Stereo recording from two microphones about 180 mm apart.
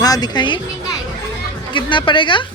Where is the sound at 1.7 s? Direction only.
25° left (ahead or behind).